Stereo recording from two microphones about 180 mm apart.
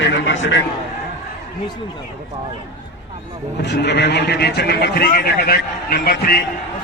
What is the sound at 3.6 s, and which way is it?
A man's voice, 70° left (ahead or behind).